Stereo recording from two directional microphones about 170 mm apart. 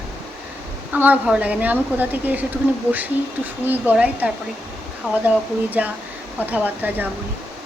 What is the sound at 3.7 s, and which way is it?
A woman's voice, 10° right (ahead or behind).